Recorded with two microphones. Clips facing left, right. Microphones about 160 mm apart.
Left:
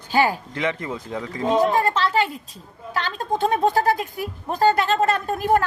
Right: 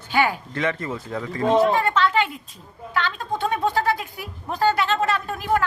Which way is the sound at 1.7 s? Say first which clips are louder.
Even; 35° left (ahead or behind).